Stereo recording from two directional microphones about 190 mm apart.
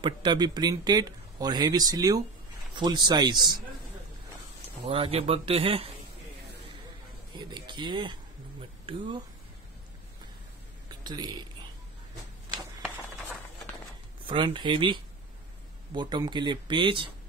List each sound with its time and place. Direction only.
0.0 s speech: 25° right (ahead or behind)
4.8 s speech: 30° right (ahead or behind)
7.3 s speech: 25° right (ahead or behind)
10.9 s a sound: 20° right (ahead or behind)
14.2 s speech: 25° right (ahead or behind)